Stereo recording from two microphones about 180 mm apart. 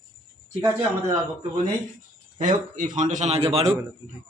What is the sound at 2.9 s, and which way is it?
Speech, 45° right (ahead or behind).